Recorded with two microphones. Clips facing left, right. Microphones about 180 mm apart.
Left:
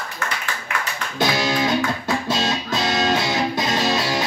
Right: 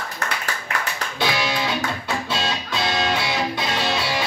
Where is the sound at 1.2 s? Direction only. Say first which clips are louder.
Left 3 dB; 40° left (ahead or behind).